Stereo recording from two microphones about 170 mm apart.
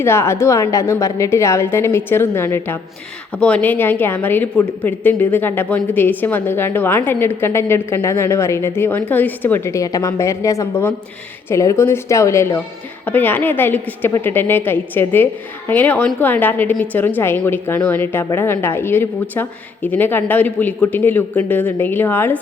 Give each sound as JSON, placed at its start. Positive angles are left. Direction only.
{"t": 0.0, "sound": "a woman's voice", "side_deg": 15}